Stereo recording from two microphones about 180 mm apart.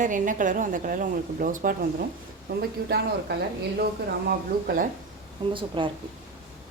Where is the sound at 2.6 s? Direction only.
65° right (ahead or behind).